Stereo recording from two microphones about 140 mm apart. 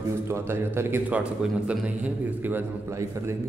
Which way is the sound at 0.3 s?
15° right (ahead or behind).